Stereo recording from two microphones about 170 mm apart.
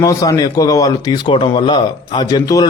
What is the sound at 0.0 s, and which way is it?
Speech, 20° left (ahead or behind).